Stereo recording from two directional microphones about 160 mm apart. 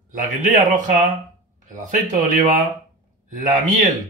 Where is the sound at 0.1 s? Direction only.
55° right (ahead or behind).